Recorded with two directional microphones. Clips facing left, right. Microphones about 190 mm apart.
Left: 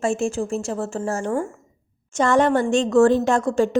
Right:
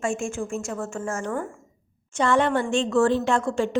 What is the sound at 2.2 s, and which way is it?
A woman's voice, 45° left (ahead or behind).